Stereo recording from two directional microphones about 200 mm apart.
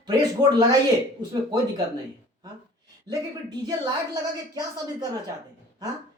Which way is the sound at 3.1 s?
20° right (ahead or behind).